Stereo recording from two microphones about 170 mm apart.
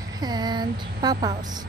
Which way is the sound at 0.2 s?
25° right (ahead or behind).